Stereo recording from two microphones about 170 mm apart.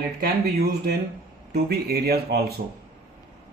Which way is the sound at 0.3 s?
70° right (ahead or behind).